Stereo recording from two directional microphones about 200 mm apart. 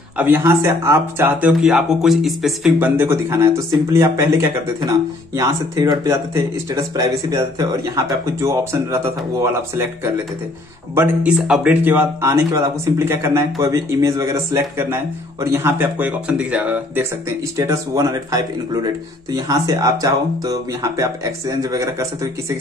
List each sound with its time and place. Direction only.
0.2 s speech: 10° right (ahead or behind)